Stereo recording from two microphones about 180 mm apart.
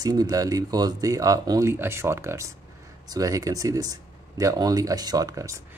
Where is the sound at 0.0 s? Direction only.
20° right (ahead or behind).